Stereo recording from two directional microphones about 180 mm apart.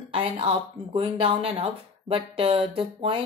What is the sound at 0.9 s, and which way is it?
Speech, 30° right (ahead or behind).